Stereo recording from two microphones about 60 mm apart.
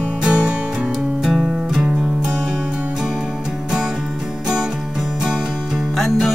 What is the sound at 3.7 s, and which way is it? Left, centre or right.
Music, centre.